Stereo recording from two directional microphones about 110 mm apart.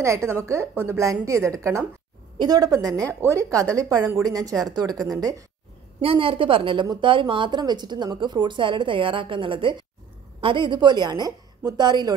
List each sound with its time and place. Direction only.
0.0 s a woman's voice: 25° right (ahead or behind)
2.3 s a woman's voice: 40° right (ahead or behind)
5.9 s a woman's voice: 55° right (ahead or behind); by 12.1 s 40° right (ahead or behind)